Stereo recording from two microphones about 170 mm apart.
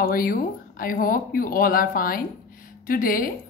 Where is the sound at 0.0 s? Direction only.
55° left (ahead or behind).